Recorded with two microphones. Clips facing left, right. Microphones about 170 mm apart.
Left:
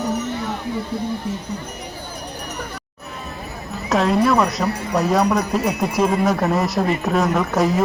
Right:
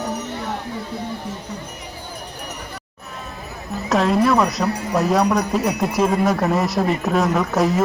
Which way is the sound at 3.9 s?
Centre (ahead or behind).